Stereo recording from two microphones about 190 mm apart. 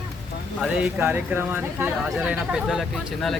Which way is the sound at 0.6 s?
5° right (ahead or behind).